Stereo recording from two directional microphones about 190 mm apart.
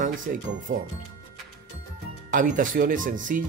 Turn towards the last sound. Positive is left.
turn(degrees=-45)  # may be behind; listen again after turning